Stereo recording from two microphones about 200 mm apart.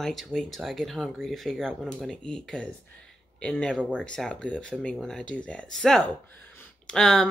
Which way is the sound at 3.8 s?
5° right (ahead or behind).